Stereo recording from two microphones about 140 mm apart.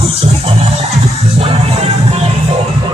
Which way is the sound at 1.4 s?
45° right (ahead or behind).